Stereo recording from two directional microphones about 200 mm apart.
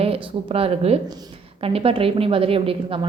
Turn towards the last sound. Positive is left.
turn(degrees=-25)  # may be behind; listen again after turning